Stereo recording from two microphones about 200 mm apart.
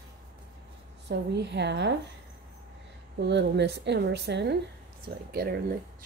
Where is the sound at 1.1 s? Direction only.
60° right (ahead or behind).